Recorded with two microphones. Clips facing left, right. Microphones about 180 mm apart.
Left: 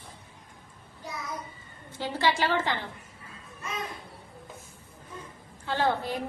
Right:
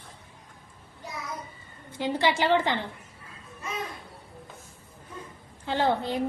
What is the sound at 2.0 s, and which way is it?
Speech, 15° right (ahead or behind).